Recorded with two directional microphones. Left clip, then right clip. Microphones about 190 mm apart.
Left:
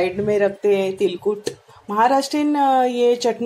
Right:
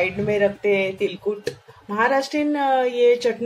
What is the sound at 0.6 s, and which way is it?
Speech, 35° left (ahead or behind).